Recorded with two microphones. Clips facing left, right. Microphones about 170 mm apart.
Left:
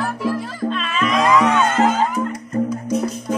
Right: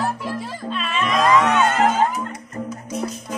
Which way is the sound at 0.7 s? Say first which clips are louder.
Left 3 dB; 5° right (ahead or behind).